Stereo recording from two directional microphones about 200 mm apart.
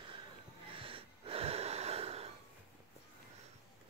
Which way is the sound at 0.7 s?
25° right (ahead or behind).